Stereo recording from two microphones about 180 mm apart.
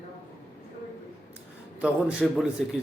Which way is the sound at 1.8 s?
5° right (ahead or behind).